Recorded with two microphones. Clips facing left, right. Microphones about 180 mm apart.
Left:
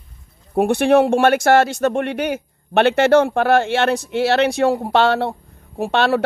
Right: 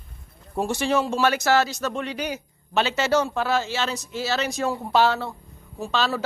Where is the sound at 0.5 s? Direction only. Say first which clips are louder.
Left 9 dB; 60° left (ahead or behind).